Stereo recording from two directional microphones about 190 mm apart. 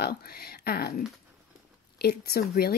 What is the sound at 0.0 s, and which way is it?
Speech, 55° left (ahead or behind).